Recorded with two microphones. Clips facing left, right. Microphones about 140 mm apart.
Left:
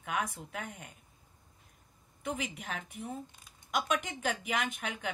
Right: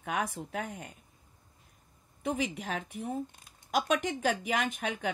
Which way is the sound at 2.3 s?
40° right (ahead or behind).